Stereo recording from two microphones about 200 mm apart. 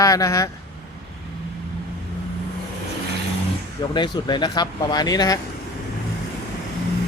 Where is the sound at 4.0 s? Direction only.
20° left (ahead or behind).